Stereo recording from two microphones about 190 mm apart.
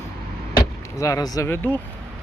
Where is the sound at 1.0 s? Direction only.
15° left (ahead or behind).